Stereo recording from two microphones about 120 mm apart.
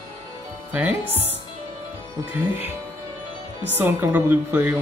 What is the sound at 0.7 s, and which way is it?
Speech, 15° right (ahead or behind).